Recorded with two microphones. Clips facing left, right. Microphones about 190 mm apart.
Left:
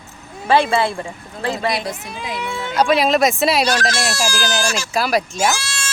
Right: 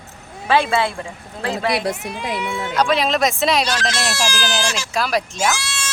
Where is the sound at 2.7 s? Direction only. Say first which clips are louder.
Left 3 dB; 10° left (ahead or behind).